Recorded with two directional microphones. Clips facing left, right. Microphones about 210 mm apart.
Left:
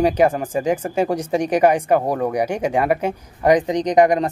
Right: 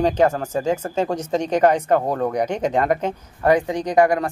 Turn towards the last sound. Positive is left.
turn(degrees=20)  # may be behind; listen again after turning